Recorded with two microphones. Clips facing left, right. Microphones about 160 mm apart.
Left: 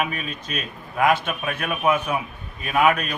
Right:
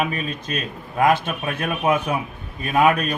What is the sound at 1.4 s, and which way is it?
Speech, 35° right (ahead or behind).